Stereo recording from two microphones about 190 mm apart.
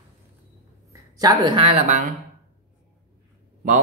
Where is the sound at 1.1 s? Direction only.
20° right (ahead or behind); by 2.0 s 35° right (ahead or behind).